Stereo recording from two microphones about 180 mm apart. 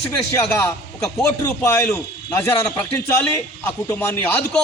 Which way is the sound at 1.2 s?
15° left (ahead or behind).